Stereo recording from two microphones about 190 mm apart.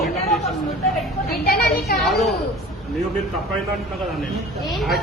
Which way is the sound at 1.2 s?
55° left (ahead or behind).